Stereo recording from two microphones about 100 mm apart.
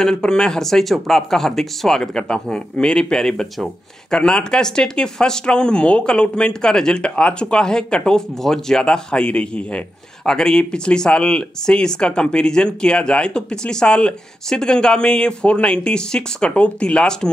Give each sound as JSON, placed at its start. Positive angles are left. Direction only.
{"t": 0.0, "sound": "speech", "side_deg": 5}